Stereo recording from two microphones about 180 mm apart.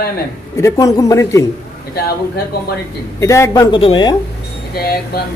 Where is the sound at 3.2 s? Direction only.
15° left (ahead or behind).